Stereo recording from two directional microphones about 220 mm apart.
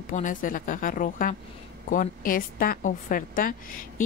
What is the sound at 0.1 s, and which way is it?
A woman's voice, 35° left (ahead or behind).